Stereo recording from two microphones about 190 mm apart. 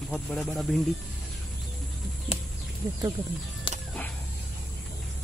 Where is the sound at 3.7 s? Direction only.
25° left (ahead or behind).